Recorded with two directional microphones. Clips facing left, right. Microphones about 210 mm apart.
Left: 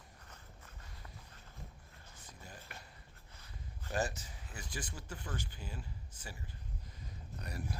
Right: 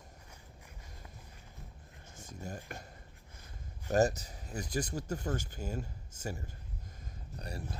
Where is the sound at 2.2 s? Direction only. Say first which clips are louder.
Right 11 dB; 45° right (ahead or behind).